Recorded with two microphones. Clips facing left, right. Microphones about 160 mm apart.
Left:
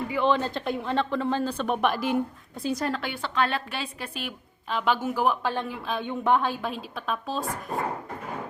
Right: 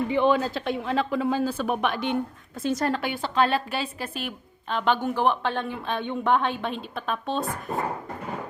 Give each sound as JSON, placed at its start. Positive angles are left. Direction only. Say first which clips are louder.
{"t": 0.3, "sound": "a woman's voice", "louder": "right 2 dB", "side_deg": -5}
{"t": 3.2, "sound": "a woman's voice", "louder": "right 4 dB", "side_deg": -35}
{"t": 3.8, "sound": "a woman's voice", "louder": "right 3 dB", "side_deg": 0}